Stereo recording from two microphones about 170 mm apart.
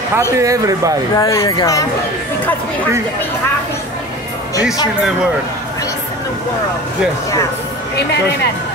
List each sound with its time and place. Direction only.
0.4 s speech: 20° right (ahead or behind)
1.1 s speech: 20° left (ahead or behind)
7.9 s speech: 85° left